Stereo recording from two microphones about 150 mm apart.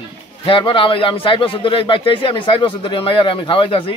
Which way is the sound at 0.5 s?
35° left (ahead or behind).